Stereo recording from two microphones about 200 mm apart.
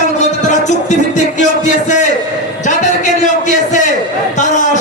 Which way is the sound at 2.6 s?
40° left (ahead or behind).